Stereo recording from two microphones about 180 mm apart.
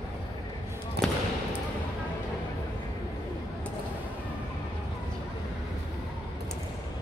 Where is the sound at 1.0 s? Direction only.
65° right (ahead or behind).